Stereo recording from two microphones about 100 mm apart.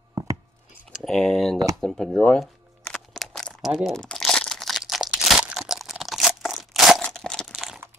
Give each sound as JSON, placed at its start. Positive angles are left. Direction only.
{"t": 0.2, "sound": "a sound", "side_deg": -30}
{"t": 1.0, "sound": "speech", "side_deg": 0}
{"t": 2.4, "sound": "crumpling", "side_deg": 5}
{"t": 5.6, "sound": "crunch", "side_deg": 0}
{"t": 7.0, "sound": "a sound", "side_deg": 5}
{"t": 7.5, "sound": "crunch", "side_deg": -5}